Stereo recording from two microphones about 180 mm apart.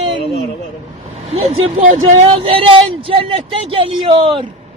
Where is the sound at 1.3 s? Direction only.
35° right (ahead or behind).